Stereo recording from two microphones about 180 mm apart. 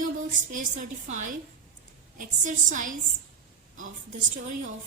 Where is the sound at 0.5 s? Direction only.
45° right (ahead or behind).